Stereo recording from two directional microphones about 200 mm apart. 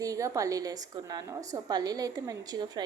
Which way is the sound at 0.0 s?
15° right (ahead or behind).